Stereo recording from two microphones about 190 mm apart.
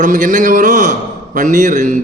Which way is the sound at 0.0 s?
45° right (ahead or behind).